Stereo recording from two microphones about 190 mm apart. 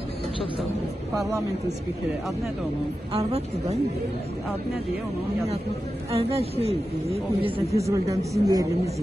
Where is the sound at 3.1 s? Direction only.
35° right (ahead or behind).